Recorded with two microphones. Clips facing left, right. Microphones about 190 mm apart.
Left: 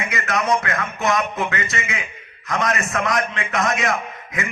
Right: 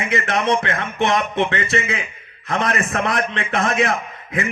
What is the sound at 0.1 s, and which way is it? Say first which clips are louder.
A man's voice: right 2 dB; 25° right (ahead or behind).